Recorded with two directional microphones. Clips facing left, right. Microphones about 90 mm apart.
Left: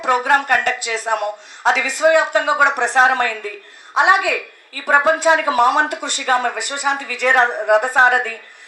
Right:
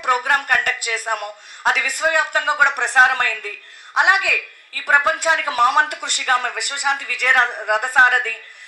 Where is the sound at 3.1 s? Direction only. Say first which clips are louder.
Left 3 dB; 20° left (ahead or behind).